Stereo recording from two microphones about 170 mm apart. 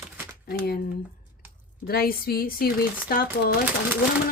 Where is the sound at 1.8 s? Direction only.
65° left (ahead or behind).